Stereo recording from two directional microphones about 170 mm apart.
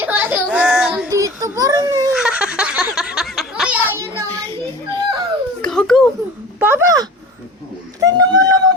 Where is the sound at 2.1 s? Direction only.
5° right (ahead or behind).